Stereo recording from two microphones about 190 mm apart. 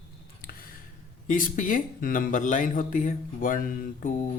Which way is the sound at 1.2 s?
45° left (ahead or behind).